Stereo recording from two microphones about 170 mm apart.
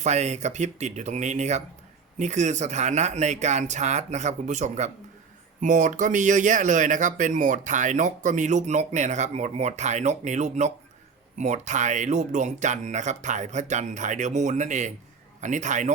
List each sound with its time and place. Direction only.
0.0 s speech: 40° right (ahead or behind)